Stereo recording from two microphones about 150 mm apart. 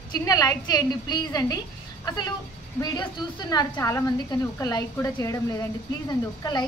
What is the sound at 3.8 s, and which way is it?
A woman's voice, 20° left (ahead or behind).